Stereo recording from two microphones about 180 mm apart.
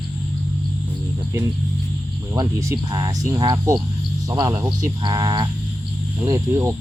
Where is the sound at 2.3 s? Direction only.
20° right (ahead or behind).